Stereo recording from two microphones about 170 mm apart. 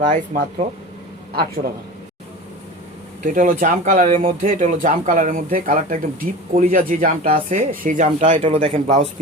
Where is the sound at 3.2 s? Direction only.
50° right (ahead or behind).